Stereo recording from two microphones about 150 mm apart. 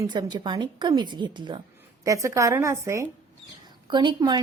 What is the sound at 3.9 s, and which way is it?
Speech, 30° right (ahead or behind).